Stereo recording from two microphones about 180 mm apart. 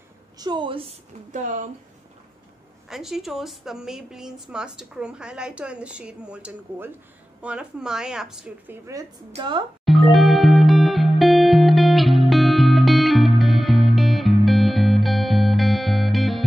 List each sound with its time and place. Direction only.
0.4 s speech: 25° right (ahead or behind); by 1.7 s 45° right (ahead or behind)
2.9 s a woman's voice: centre (ahead or behind)
9.3 s speech: 25° right (ahead or behind)
9.8 s music: centre (ahead or behind)